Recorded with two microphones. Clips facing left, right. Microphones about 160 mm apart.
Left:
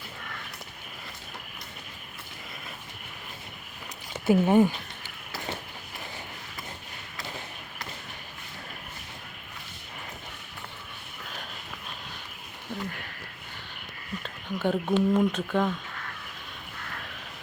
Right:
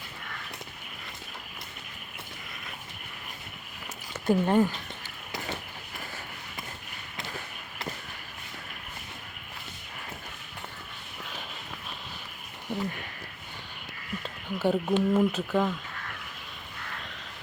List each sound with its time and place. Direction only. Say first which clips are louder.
4.1 s speech: left 3 dB; 10° left (ahead or behind)
12.7 s a sound: right 3 dB; 15° right (ahead or behind)
14.6 s speech: even; 5° right (ahead or behind)